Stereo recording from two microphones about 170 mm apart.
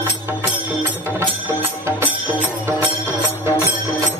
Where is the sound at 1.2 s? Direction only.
15° right (ahead or behind).